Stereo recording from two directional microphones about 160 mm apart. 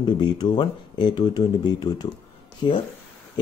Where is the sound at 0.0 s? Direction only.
25° left (ahead or behind).